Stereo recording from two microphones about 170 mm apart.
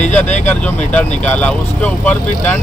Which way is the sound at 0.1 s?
10° left (ahead or behind).